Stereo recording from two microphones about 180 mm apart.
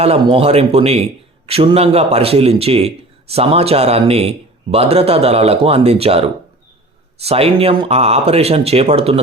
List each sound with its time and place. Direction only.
0.0 s a man's voice: 35° right (ahead or behind)